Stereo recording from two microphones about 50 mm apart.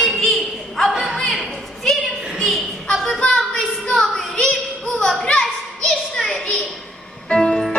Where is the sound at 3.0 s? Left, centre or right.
Centre.